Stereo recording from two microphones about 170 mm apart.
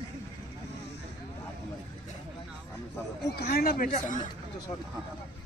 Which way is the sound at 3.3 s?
65° left (ahead or behind).